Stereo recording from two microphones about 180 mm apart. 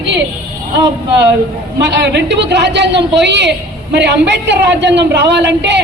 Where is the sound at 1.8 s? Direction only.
75° right (ahead or behind).